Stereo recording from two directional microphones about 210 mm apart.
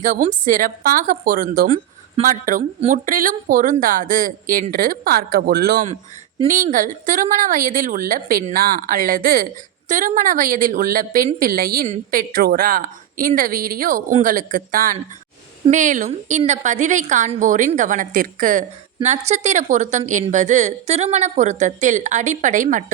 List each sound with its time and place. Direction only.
0.0 s a woman's voice: 35° right (ahead or behind)